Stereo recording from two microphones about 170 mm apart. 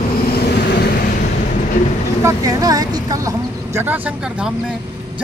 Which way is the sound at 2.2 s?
20° right (ahead or behind).